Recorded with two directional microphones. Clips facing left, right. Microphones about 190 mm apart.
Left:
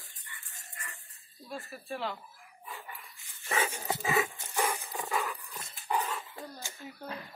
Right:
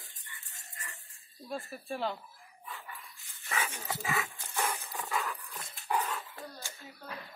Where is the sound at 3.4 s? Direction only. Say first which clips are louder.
Left 5 dB; 30° left (ahead or behind).